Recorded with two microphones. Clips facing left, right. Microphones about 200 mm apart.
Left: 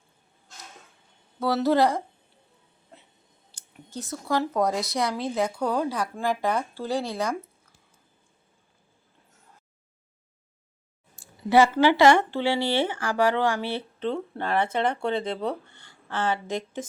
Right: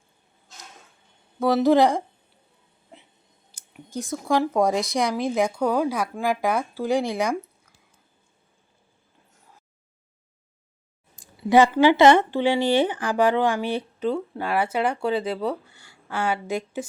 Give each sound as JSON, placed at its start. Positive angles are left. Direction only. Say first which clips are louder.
{"t": 1.4, "sound": "speech", "louder": "right 4 dB", "side_deg": -15}
{"t": 3.5, "sound": "a sound", "louder": "right 5 dB", "side_deg": -10}
{"t": 4.2, "sound": "speech", "louder": "right 3 dB", "side_deg": -15}
{"t": 11.2, "sound": "speech", "louder": "right 2 dB", "side_deg": -15}